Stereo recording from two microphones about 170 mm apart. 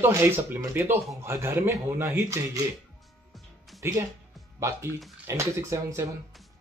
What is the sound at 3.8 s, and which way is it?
Speech, 15° right (ahead or behind).